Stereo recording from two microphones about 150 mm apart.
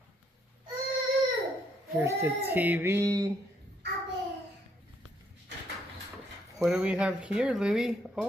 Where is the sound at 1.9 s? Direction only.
15° right (ahead or behind).